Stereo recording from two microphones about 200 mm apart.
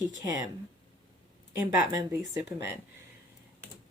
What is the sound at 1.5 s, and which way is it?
Speech, 15° right (ahead or behind).